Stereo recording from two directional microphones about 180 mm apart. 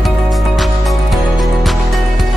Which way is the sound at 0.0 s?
Centre (ahead or behind).